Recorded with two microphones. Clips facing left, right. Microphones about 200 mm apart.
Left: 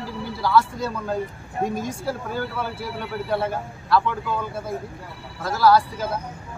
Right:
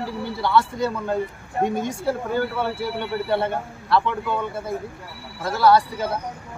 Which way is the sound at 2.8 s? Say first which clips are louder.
Right 4 dB; centre (ahead or behind).